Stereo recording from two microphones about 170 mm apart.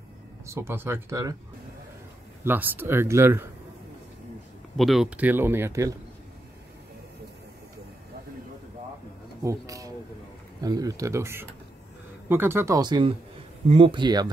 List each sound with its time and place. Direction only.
0.5 s speech: 15° right (ahead or behind)
2.4 s speech: 10° right (ahead or behind)
4.7 s speech: centre (ahead or behind); by 5.9 s 20° right (ahead or behind)
9.4 s speech: 20° right (ahead or behind)